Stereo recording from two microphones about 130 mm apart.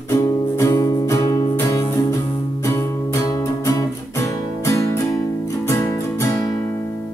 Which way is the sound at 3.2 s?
30° left (ahead or behind).